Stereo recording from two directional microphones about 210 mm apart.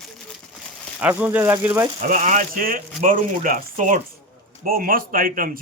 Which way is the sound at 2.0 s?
35° right (ahead or behind).